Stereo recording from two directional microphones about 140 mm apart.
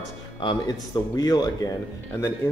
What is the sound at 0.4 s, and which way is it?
A man's voice, 30° left (ahead or behind).